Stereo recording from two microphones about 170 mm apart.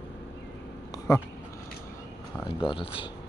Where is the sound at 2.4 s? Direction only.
30° left (ahead or behind).